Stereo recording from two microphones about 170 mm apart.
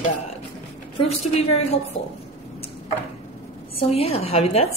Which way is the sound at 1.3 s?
40° left (ahead or behind).